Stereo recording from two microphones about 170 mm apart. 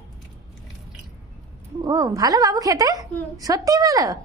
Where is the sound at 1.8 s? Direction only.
20° right (ahead or behind).